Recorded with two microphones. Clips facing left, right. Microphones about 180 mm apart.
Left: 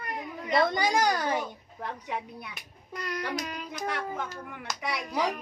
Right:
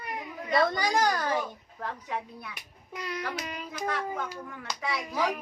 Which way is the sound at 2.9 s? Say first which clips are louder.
Left 2 dB; 5° right (ahead or behind).